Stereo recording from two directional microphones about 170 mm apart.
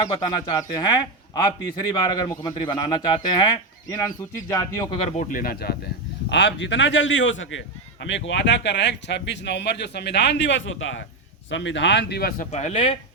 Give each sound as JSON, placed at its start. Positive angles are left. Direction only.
{"t": 0.1, "sound": "a man's voice", "side_deg": 25}
{"t": 4.9, "sound": "speech", "side_deg": 40}
{"t": 5.4, "sound": "speech", "side_deg": 65}
{"t": 6.2, "sound": "speech", "side_deg": 90}
{"t": 12.5, "sound": "speech", "side_deg": 45}